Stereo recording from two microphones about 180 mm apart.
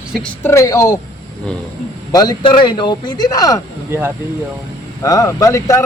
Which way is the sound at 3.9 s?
15° right (ahead or behind).